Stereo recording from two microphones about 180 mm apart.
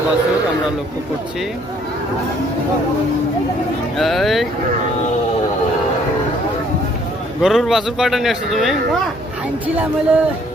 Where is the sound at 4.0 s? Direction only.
Centre (ahead or behind).